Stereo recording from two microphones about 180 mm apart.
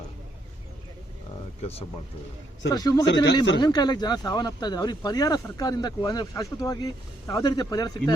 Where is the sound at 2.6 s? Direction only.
20° left (ahead or behind).